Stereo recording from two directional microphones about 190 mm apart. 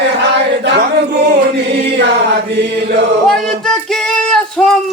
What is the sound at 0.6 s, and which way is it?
Speech, 65° right (ahead or behind).